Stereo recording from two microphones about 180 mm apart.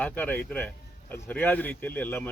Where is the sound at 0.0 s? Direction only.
10° left (ahead or behind).